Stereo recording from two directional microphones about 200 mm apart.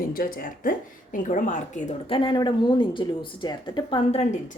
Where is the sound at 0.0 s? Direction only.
45° left (ahead or behind).